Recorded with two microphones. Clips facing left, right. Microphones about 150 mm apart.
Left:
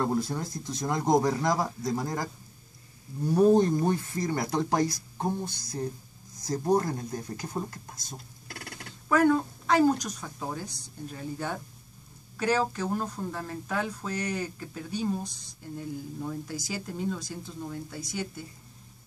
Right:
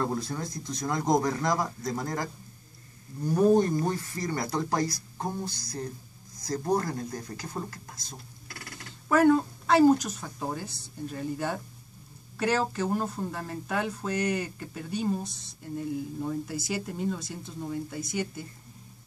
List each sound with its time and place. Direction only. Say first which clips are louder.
0.0 s speech: left 2 dB; 20° left (ahead or behind)
3.3 s speech: left 1 dB; 20° left (ahead or behind)
9.1 s speech: right 2 dB; 5° right (ahead or behind)
16.2 s speech: right 3 dB; 5° right (ahead or behind)